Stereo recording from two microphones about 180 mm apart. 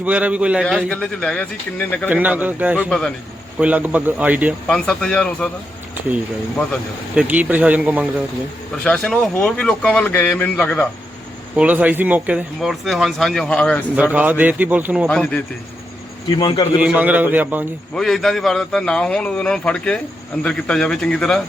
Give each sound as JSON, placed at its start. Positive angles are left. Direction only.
{"t": 0.0, "sound": "a man's voice", "side_deg": -10}
{"t": 2.0, "sound": "a man's voice", "side_deg": -10}
{"t": 4.7, "sound": "a man's voice", "side_deg": 5}
{"t": 7.2, "sound": "a man's voice", "side_deg": -10}
{"t": 8.8, "sound": "speech", "side_deg": 5}
{"t": 11.5, "sound": "a man's voice", "side_deg": -10}
{"t": 13.9, "sound": "a man's voice", "side_deg": -10}
{"t": 16.4, "sound": "a man's voice", "side_deg": 25}
{"t": 16.8, "sound": "a man's voice", "side_deg": -10}
{"t": 17.9, "sound": "a man's voice", "side_deg": 0}